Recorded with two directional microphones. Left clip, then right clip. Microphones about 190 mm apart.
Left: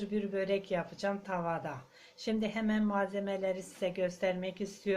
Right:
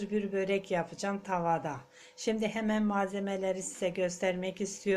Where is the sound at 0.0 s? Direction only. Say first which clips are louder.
Right 2 dB; 35° right (ahead or behind).